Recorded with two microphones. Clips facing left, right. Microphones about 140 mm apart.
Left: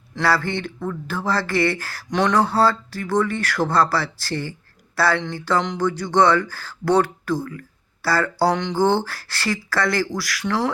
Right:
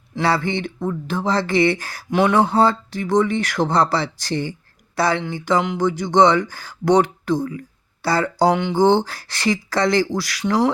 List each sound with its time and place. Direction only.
0.1 s speech: 20° right (ahead or behind)
2.3 s speech: 20° right (ahead or behind)